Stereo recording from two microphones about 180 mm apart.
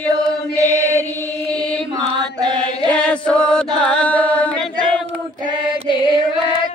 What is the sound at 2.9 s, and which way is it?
Chant, 5° left (ahead or behind).